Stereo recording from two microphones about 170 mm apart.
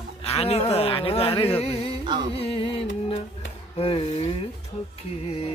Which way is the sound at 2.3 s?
35° left (ahead or behind).